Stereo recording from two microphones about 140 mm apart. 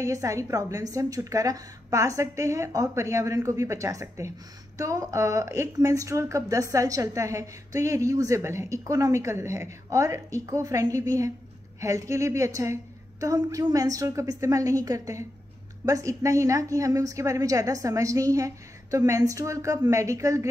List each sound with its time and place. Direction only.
0.0 s speech: 25° right (ahead or behind)